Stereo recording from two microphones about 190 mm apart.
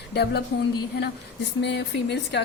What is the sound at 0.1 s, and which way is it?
A woman's voice, 60° left (ahead or behind).